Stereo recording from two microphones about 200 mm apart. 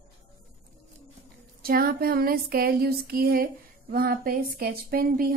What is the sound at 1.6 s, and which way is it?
A woman's voice, 45° right (ahead or behind).